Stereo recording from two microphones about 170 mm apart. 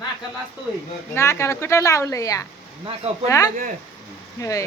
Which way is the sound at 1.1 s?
15° left (ahead or behind).